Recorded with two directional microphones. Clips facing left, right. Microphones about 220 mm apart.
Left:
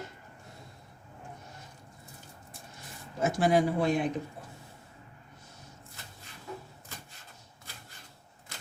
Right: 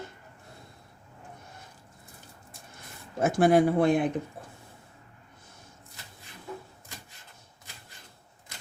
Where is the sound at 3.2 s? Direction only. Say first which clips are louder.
Right 4 dB; 55° right (ahead or behind).